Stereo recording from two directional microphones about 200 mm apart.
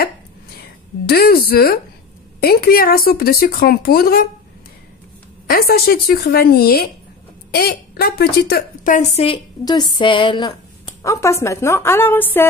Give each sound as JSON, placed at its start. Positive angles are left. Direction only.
{"t": 1.0, "sound": "speech", "side_deg": 50}
{"t": 5.5, "sound": "a woman's voice", "side_deg": 50}
{"t": 9.9, "sound": "a sound", "side_deg": 25}
{"t": 11.0, "sound": "speech", "side_deg": 15}